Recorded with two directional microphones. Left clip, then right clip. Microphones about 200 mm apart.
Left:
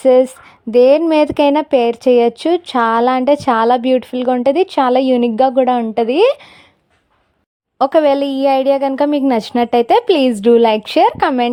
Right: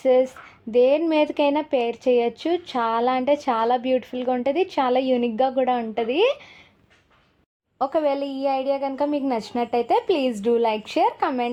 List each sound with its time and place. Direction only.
0.0 s a woman's voice: 45° left (ahead or behind)
7.8 s a woman's voice: 50° left (ahead or behind)